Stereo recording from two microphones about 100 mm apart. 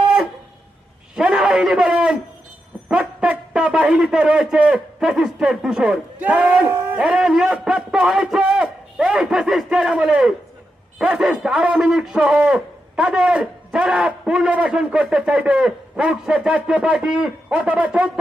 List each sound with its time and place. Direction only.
1.1 s a sound: 10° right (ahead or behind)
2.9 s speech: 10° right (ahead or behind)
6.7 s a man's voice: 25° right (ahead or behind)
7.0 s a man's voice: 10° right (ahead or behind)